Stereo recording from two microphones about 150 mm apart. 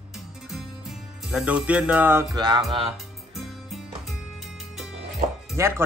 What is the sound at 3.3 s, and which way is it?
Music, centre (ahead or behind).